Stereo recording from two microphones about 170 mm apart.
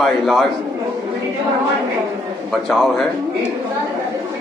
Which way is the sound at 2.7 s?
Centre (ahead or behind).